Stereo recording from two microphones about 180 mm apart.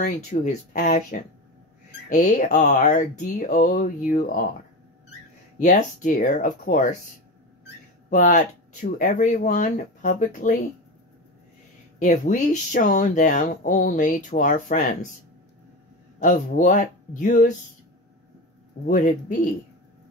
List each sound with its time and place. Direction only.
0.0 s speech: 45° left (ahead or behind)
5.6 s speech: 45° left (ahead or behind)
8.1 s speech: 50° left (ahead or behind)
12.0 s speech: 45° left (ahead or behind)
16.2 s speech: 45° left (ahead or behind)
18.9 s speech: 45° left (ahead or behind)